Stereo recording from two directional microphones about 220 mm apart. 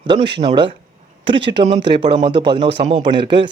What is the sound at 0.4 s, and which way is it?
Speech, 20° right (ahead or behind).